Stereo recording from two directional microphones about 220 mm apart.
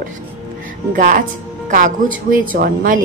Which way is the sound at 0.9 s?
35° right (ahead or behind).